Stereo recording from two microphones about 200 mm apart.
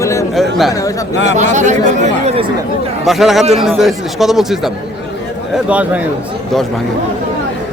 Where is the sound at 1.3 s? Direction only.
35° right (ahead or behind).